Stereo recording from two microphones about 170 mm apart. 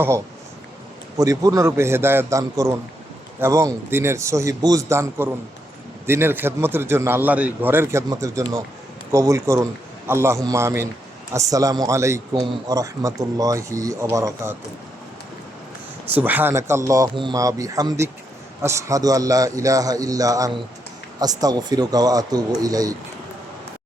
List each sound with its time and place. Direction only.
1.1 s a man's voice: 20° right (ahead or behind)
16.1 s a man's voice: 10° right (ahead or behind)